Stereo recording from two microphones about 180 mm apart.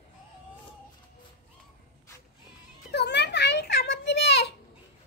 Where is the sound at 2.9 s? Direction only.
70° left (ahead or behind).